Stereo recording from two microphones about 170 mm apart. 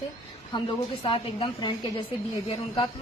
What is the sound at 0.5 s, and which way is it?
A man's voice, 25° left (ahead or behind).